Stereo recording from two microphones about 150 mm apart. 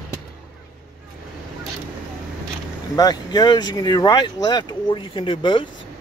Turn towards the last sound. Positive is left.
turn(degrees=35)  # may be behind; listen again after turning